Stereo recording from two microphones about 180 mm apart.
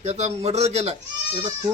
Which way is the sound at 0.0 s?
35° right (ahead or behind).